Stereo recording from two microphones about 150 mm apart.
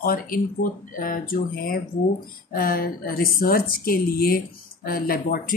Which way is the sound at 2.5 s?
80° left.